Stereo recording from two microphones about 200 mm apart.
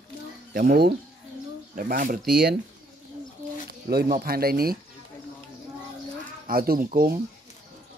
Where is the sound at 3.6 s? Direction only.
50° right (ahead or behind).